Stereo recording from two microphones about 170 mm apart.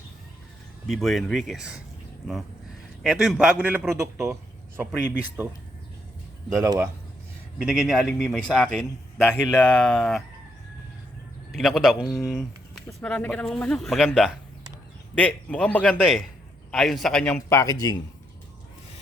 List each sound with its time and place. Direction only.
0.9 s speech: centre (ahead or behind)
3.0 s a man's voice: centre (ahead or behind)
6.5 s a man's voice: 15° right (ahead or behind)
7.6 s speech: centre (ahead or behind)
11.5 s a man's voice: centre (ahead or behind); by 18.0 s 20° left (ahead or behind)